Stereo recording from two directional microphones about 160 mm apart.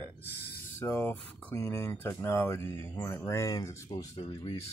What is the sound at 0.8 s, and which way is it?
Speech, 10° left (ahead or behind).